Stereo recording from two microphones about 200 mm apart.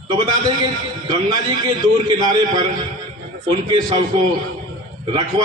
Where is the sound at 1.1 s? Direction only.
20° right (ahead or behind).